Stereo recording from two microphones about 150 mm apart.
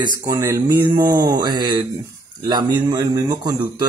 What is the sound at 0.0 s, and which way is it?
Speech, 25° right (ahead or behind).